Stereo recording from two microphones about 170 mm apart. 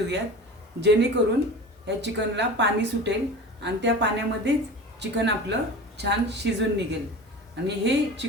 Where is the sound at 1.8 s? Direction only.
90° right.